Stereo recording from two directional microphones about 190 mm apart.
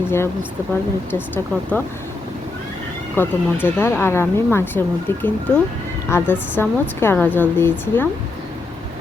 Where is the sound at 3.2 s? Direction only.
10° left (ahead or behind).